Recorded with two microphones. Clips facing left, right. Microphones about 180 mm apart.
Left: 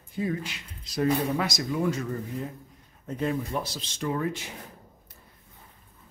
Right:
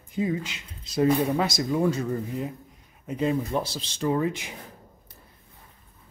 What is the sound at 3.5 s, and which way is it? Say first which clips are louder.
Speech: right 4 dB; 30° right (ahead or behind).